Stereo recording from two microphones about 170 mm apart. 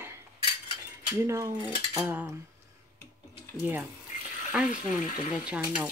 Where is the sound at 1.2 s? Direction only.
15° right (ahead or behind).